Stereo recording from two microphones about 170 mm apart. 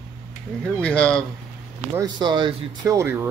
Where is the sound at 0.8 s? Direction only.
5° left (ahead or behind).